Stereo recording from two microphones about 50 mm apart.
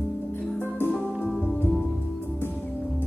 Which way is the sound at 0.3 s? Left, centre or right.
Left.